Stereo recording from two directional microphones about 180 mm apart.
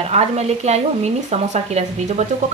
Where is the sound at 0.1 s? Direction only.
35° right (ahead or behind).